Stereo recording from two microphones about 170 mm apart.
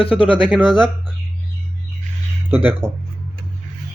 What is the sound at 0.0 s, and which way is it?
Speech, 30° left (ahead or behind).